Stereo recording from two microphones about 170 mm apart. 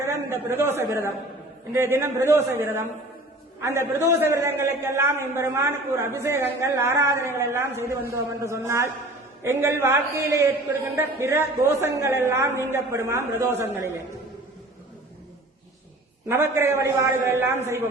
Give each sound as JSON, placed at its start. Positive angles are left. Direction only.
{"t": 0.0, "sound": "a man's voice", "side_deg": -15}
{"t": 16.3, "sound": "a man's voice", "side_deg": -15}